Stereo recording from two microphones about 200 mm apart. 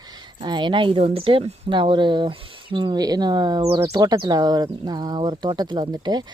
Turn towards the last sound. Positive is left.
turn(degrees=-20)  # may be behind; listen again after turning